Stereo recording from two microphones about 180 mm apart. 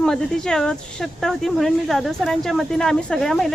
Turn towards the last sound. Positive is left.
turn(degrees=0)  # may be behind; listen again after turning